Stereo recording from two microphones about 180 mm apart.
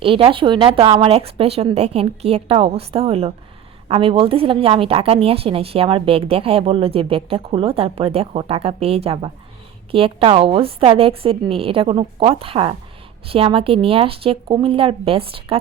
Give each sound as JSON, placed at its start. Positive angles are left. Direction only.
{"t": 0.0, "sound": "a woman's voice", "side_deg": -30}